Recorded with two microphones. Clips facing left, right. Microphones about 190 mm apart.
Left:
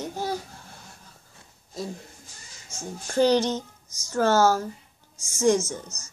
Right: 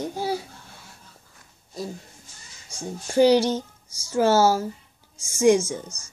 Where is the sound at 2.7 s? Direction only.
10° right (ahead or behind).